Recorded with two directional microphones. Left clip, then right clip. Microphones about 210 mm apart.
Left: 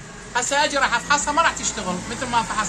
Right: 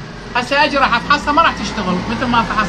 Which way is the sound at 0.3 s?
35° left (ahead or behind).